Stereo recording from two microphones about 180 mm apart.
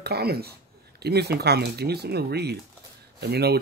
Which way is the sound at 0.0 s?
60° right (ahead or behind).